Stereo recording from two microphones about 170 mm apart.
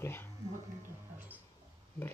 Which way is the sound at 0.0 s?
15° left (ahead or behind).